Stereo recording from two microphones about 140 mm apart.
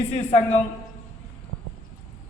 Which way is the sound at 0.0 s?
50° left (ahead or behind).